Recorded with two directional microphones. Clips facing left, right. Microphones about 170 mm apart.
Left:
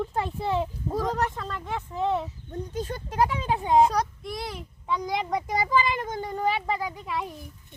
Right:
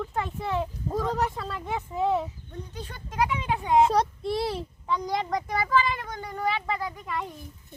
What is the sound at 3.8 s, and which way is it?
Speech, 30° right (ahead or behind).